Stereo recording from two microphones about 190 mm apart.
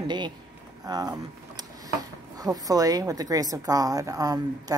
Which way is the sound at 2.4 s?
20° right (ahead or behind).